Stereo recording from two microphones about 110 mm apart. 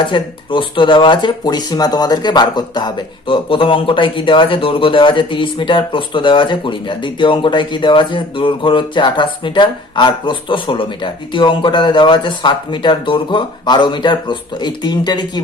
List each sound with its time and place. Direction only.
0.1 s speech: 50° left (ahead or behind)